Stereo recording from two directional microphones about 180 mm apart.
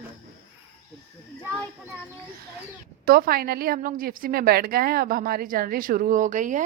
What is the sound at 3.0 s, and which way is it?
A woman's voice, 55° right (ahead or behind).